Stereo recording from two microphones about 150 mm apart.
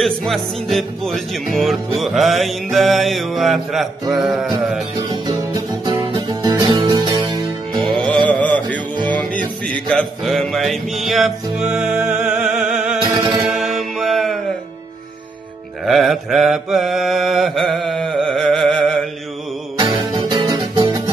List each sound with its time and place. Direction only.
0.0 s mantra: centre (ahead or behind)
5.1 s music: 30° right (ahead or behind)
7.9 s music: 5° left (ahead or behind)
8.3 s mantra: 10° left (ahead or behind)
8.9 s music: 30° right (ahead or behind)
9.7 s music: 5° left (ahead or behind)
13.3 s mantra: centre (ahead or behind)
15.8 s mantra: centre (ahead or behind)
19.8 s music: 30° right (ahead or behind)